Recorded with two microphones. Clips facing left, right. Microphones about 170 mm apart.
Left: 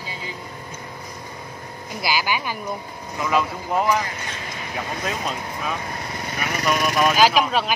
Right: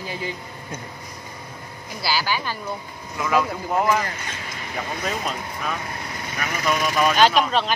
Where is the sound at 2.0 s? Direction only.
15° left (ahead or behind).